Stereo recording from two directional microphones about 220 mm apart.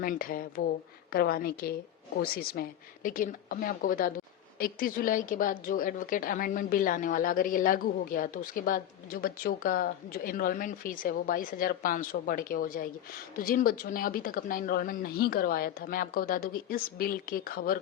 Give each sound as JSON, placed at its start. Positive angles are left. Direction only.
{"t": 0.0, "sound": "a woman's voice", "side_deg": 40}